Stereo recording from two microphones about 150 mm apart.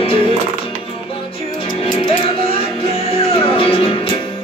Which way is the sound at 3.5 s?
35° left (ahead or behind).